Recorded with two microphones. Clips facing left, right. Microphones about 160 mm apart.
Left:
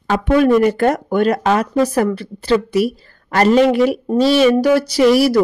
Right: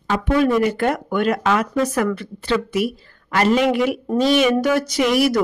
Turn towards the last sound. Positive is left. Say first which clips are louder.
# left 5 dB
turn(degrees=35)  # may be behind; listen again after turning